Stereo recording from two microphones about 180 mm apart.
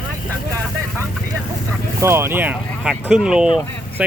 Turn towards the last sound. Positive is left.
turn(degrees=-5)  # may be behind; listen again after turning